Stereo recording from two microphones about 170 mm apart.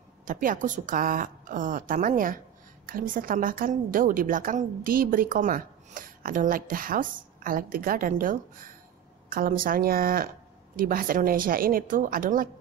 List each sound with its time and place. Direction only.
0.2 s a woman's voice: 50° right (ahead or behind)